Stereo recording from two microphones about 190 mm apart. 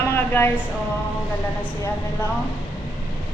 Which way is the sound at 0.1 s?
10° left (ahead or behind).